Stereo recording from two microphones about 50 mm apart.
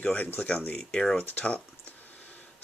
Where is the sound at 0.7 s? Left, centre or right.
Centre.